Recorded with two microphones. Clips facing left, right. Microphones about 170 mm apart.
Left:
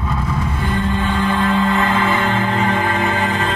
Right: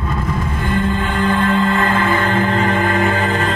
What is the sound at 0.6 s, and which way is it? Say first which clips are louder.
Music: right 2 dB; 55° right (ahead or behind).